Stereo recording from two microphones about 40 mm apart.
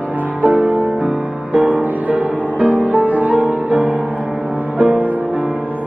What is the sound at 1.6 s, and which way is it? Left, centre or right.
Music, right.